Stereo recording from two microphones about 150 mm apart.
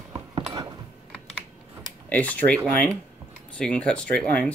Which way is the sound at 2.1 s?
10° left (ahead or behind).